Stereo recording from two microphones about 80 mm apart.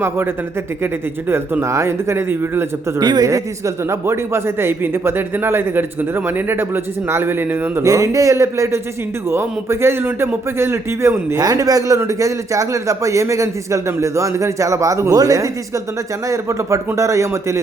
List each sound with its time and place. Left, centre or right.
1.6 s a man's voice: right
3.0 s speech: right
3.8 s speech: right
7.9 s a man's voice: right
11.3 s a man's voice: right